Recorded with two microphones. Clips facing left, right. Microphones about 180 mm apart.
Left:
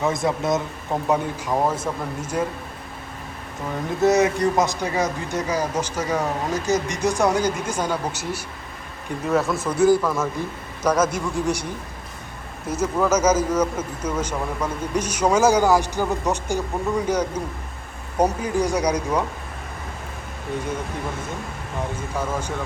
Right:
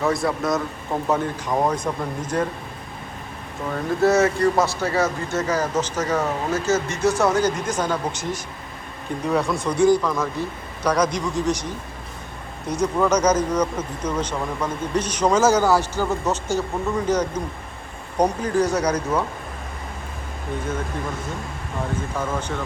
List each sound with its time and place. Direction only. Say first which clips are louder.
0.0 s a man's voice: even; 20° left (ahead or behind)
1.0 s speech: even; 10° left (ahead or behind)
4.0 s a man's voice: even; 15° left (ahead or behind)
22.1 s speech: even; 10° left (ahead or behind)